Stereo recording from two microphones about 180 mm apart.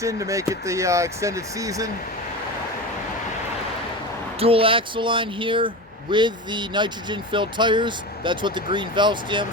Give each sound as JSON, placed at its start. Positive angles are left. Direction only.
{"t": 0.0, "sound": "speech", "side_deg": -15}
{"t": 4.4, "sound": "speech", "side_deg": -30}